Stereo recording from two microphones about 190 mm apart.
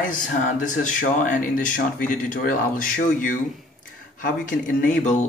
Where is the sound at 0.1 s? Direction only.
45° left (ahead or behind).